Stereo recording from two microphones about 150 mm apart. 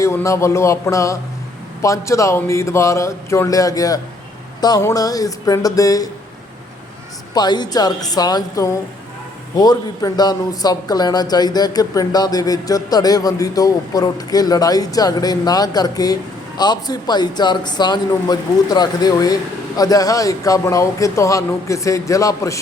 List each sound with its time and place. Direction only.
0.0 s a man's voice: 20° left (ahead or behind)
7.3 s a man's voice: 30° left (ahead or behind)